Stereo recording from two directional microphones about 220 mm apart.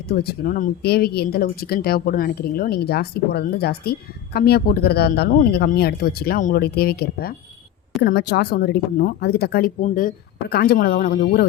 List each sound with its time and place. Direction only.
0.1 s speech: 45° left (ahead or behind)